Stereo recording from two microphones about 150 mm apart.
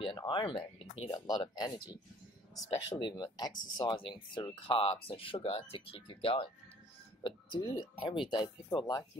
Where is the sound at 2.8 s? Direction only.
30° left (ahead or behind).